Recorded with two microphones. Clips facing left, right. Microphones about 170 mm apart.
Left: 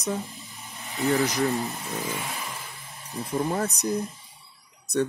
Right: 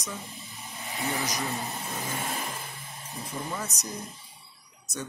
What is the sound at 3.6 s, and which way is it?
Speech, 60° left (ahead or behind).